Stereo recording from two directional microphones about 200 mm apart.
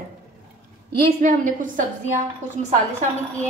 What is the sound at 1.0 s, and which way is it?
Speech, 40° right (ahead or behind).